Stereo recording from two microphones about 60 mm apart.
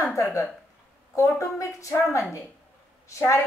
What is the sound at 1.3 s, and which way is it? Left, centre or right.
Speech, left.